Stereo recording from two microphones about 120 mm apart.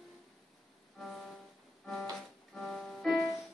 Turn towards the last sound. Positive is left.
turn(degrees=0)  # may be behind; listen again after turning